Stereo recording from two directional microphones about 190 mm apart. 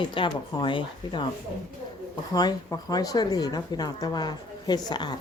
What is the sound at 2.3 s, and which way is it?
A woman's voice, 20° left (ahead or behind).